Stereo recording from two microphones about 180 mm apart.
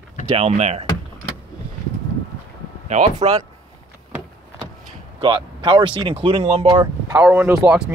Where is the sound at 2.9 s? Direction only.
35° right (ahead or behind).